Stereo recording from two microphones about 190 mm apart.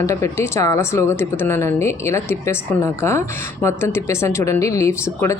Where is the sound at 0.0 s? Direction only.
15° left (ahead or behind).